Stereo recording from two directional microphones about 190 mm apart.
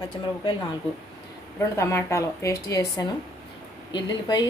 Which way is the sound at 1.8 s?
15° left (ahead or behind).